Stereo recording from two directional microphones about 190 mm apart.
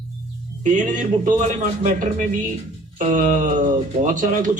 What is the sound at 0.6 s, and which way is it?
A man's voice, 40° right (ahead or behind).